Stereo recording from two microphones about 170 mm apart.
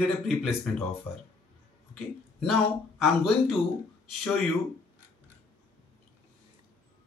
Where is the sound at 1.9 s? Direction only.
Centre (ahead or behind).